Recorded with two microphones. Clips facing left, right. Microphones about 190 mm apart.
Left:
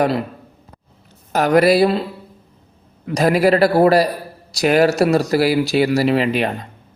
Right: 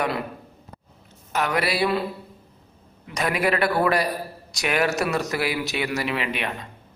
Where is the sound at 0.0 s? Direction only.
30° left (ahead or behind).